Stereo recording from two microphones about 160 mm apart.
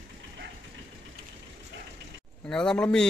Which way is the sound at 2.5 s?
5° left (ahead or behind).